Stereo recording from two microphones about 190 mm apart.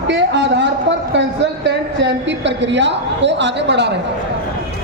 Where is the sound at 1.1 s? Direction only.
65° right (ahead or behind).